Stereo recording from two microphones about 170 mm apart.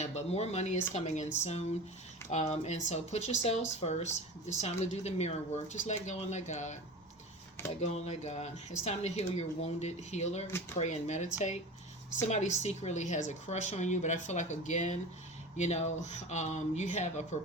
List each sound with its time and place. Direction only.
0.0 s a sound: 40° left (ahead or behind)
0.9 s a woman's voice: 40° left (ahead or behind)
7.8 s a woman's voice: 40° left (ahead or behind)